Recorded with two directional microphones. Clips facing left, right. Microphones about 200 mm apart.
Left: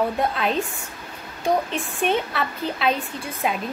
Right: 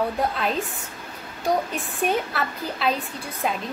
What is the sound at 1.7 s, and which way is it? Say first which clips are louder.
A woman's voice: left 1 dB; centre (ahead or behind).